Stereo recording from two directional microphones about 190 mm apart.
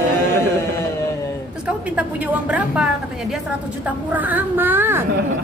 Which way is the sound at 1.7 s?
5° right (ahead or behind).